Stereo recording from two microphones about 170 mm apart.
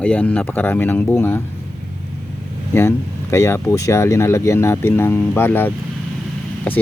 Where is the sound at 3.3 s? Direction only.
15° left (ahead or behind).